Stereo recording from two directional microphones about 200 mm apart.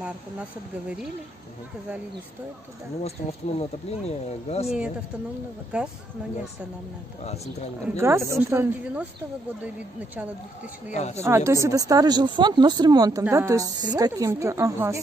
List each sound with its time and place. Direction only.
0.0 s speech: 5° right (ahead or behind)
3.0 s speech: 30° left (ahead or behind)
5.7 s speech: 5° right (ahead or behind)
7.2 s speech: 35° left (ahead or behind)
8.0 s a woman's voice: 15° right (ahead or behind)
10.9 s speech: 35° left (ahead or behind)
11.1 s a woman's voice: 15° right (ahead or behind)